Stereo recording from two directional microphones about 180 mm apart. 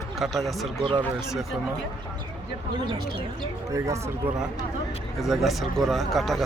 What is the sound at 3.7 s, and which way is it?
Speech, 20° right (ahead or behind).